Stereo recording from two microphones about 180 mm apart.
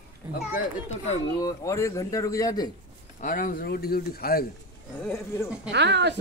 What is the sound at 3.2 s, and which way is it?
A man's voice, 50° left (ahead or behind).